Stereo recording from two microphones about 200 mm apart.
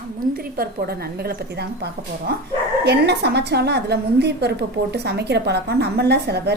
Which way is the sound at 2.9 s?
55° right (ahead or behind).